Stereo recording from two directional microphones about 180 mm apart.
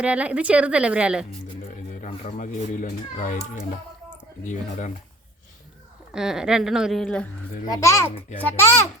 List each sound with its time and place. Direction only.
0.0 s a woman's voice: 10° right (ahead or behind)
2.0 s a man's voice: 45° left (ahead or behind)
6.1 s a woman's voice: 5° right (ahead or behind)
7.7 s a child's voice: 15° left (ahead or behind)